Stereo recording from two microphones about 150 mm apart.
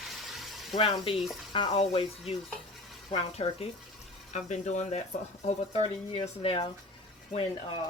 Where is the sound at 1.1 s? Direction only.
Centre (ahead or behind).